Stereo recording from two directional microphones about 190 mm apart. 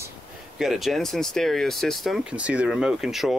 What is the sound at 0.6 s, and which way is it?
Speech, centre (ahead or behind).